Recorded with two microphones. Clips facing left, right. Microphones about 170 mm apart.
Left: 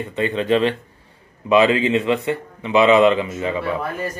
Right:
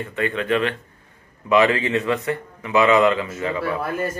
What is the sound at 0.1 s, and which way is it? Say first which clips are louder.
A man's voice: left 4 dB; 25° left (ahead or behind).